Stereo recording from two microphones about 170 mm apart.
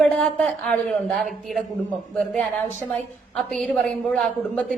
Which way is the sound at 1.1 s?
Centre (ahead or behind).